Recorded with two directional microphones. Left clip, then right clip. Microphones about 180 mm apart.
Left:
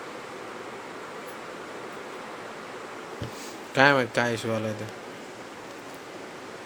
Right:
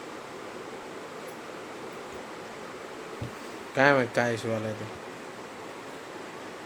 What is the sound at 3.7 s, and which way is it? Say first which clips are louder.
Speech: left 2 dB; 15° left (ahead or behind).